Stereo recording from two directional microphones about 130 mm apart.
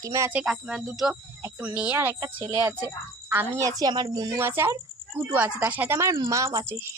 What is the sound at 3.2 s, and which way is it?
A woman's voice, 15° right (ahead or behind).